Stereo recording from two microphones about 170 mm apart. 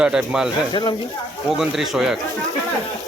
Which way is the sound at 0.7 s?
25° left (ahead or behind).